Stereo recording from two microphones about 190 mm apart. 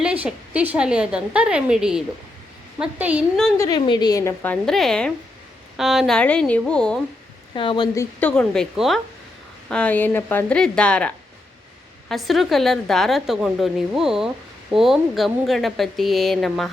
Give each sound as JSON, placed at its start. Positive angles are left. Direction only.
{"t": 0.0, "sound": "a woman's voice", "side_deg": -5}
{"t": 3.6, "sound": "a woman's voice", "side_deg": 20}
{"t": 4.6, "sound": "speech", "side_deg": 0}
{"t": 7.5, "sound": "a woman's voice", "side_deg": 25}
{"t": 7.9, "sound": "a woman's voice", "side_deg": 5}